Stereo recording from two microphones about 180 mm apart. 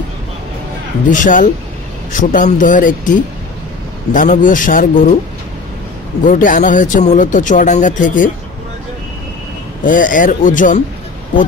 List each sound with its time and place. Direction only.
1.1 s speech: 45° left (ahead or behind)
6.2 s speech: 50° left (ahead or behind)
9.8 s speech: 50° left (ahead or behind)